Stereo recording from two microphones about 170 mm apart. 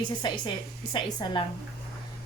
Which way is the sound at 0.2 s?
25° left (ahead or behind).